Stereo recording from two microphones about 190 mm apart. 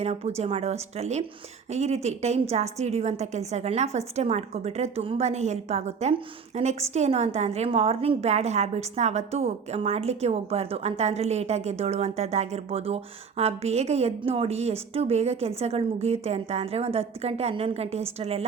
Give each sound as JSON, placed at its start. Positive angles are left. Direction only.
{"t": 0.0, "sound": "a woman's voice", "side_deg": -35}